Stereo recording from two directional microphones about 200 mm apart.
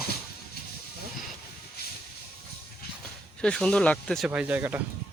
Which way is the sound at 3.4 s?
5° left (ahead or behind).